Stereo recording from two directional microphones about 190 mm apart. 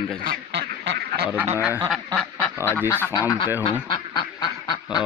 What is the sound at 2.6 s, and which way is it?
Speech, 10° left (ahead or behind).